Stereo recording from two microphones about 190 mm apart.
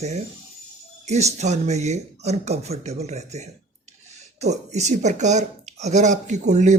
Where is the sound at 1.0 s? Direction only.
35° right (ahead or behind).